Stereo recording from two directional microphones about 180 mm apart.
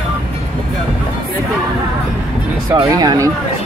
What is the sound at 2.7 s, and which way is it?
Speech, 25° right (ahead or behind).